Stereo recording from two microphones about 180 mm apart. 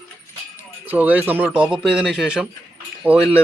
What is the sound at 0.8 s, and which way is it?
Speech, 10° right (ahead or behind).